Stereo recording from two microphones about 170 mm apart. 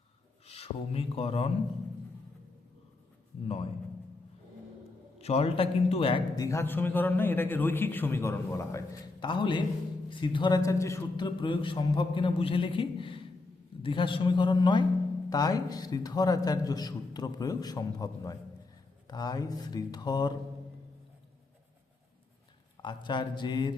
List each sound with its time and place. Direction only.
0.4 s speech: 35° left (ahead or behind)
3.4 s a man's voice: 35° left (ahead or behind)
5.2 s a man's voice: 35° left (ahead or behind); by 11.3 s 15° left (ahead or behind)
11.3 s a man's voice: 30° left (ahead or behind)
22.8 s a man's voice: 25° left (ahead or behind)